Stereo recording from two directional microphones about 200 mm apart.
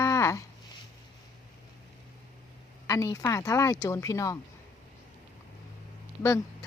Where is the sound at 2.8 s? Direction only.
15° left (ahead or behind).